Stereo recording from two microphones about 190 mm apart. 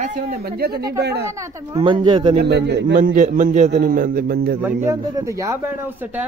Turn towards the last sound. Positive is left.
turn(degrees=-10)  # may be behind; listen again after turning